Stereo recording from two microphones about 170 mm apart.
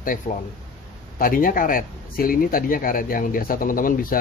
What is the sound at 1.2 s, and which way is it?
Speech, 55° left (ahead or behind).